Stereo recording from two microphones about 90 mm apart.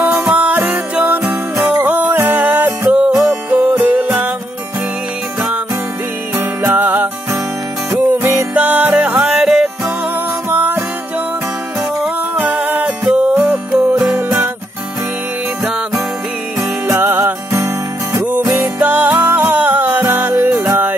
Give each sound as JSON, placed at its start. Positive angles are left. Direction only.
{"t": 0.2, "sound": "music", "side_deg": -10}
{"t": 6.3, "sound": "music", "side_deg": -20}
{"t": 8.1, "sound": "music", "side_deg": -20}
{"t": 10.5, "sound": "music", "side_deg": -20}
{"t": 12.4, "sound": "music", "side_deg": -15}
{"t": 16.8, "sound": "music", "side_deg": -30}
{"t": 18.6, "sound": "music", "side_deg": -20}
{"t": 20.6, "sound": "yodeling", "side_deg": -25}